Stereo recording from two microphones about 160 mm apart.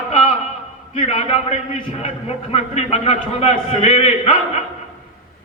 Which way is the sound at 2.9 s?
40° left (ahead or behind).